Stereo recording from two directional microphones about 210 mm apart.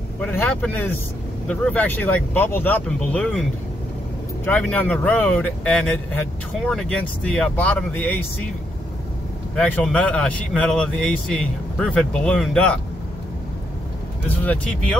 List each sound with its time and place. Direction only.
0.2 s speech: 10° left (ahead or behind)
4.5 s a man's voice: 10° left (ahead or behind)
9.6 s a man's voice: 5° left (ahead or behind)
14.3 s speech: 5° left (ahead or behind)